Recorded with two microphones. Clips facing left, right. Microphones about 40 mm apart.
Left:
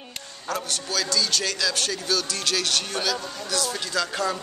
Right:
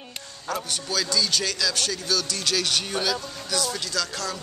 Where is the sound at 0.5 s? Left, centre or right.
Centre.